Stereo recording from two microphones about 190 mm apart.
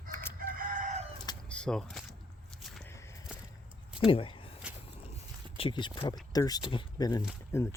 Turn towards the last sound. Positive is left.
turn(degrees=15)  # may be behind; listen again after turning